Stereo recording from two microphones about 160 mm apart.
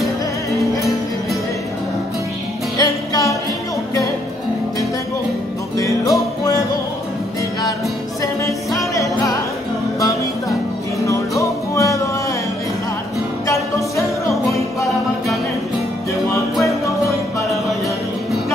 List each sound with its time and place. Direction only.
2.8 s music: 20° left (ahead or behind)
5.8 s music: 20° left (ahead or behind)
8.2 s music: 20° left (ahead or behind)
11.1 s music: 20° left (ahead or behind)
13.5 s music: 20° left (ahead or behind)